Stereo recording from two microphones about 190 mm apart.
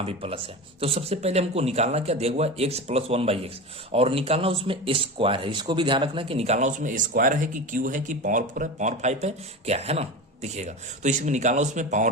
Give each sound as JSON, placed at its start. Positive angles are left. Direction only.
{"t": 0.0, "sound": "speech", "side_deg": -30}